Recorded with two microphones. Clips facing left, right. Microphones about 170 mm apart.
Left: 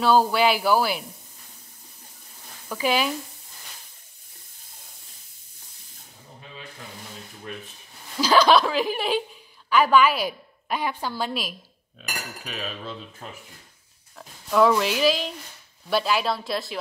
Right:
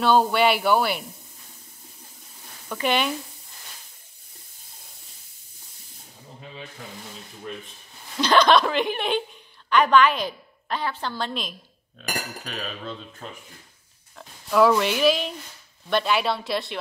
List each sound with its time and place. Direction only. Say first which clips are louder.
0.0 s speech: even; centre (ahead or behind)
2.7 s speech: even; 5° left (ahead or behind)
8.2 s a woman's voice: even; 5° left (ahead or behind)